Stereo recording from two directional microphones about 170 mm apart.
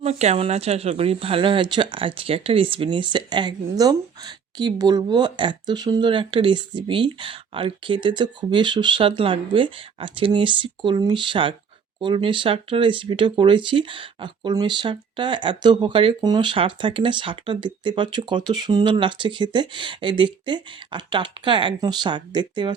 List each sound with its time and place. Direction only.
0.0 s speech: 40° right (ahead or behind)